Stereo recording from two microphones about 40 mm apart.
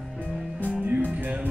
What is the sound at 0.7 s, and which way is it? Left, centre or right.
Music, right.